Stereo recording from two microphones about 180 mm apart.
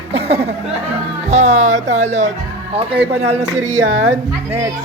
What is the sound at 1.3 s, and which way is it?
Speech, 35° right (ahead or behind).